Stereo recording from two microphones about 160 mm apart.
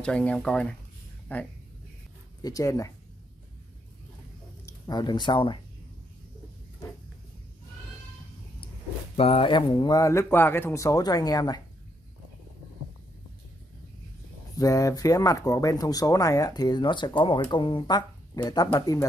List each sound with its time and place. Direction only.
0.0 s speech: 5° left (ahead or behind)
2.4 s speech: 20° left (ahead or behind)
4.6 s speech: 25° left (ahead or behind)
9.1 s speech: 35° left (ahead or behind)
14.6 s speech: 20° left (ahead or behind)